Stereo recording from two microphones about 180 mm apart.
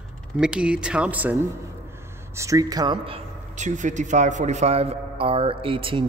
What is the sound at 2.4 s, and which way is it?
Speech, 20° right (ahead or behind).